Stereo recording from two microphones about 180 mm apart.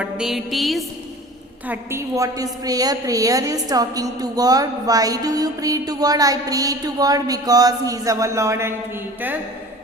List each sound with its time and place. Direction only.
0.0 s music: 5° right (ahead or behind)
1.6 s a woman's voice: 10° right (ahead or behind)